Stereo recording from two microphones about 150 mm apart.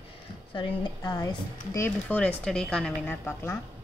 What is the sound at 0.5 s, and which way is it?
Speech, 30° left (ahead or behind).